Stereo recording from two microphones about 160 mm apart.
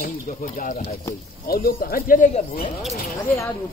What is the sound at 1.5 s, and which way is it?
Speech, 65° left (ahead or behind).